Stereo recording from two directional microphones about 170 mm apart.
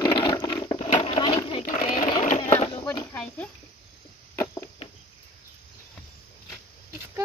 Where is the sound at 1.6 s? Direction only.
55° left (ahead or behind).